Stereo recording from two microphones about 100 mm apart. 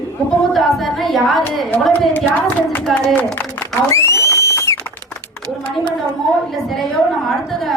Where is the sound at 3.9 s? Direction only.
30° left (ahead or behind).